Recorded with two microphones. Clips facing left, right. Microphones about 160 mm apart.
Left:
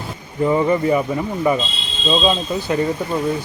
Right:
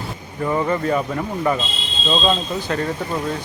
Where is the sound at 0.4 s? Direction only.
15° left (ahead or behind).